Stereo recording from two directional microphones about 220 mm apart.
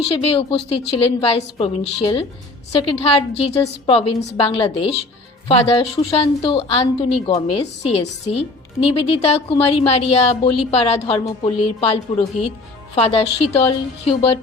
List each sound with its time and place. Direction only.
0.1 s a woman's voice: 25° left (ahead or behind)